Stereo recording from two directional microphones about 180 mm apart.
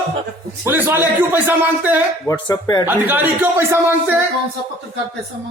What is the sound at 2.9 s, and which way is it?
Speech, 10° right (ahead or behind).